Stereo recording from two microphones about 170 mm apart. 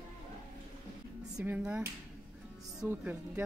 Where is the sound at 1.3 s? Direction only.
10° right (ahead or behind).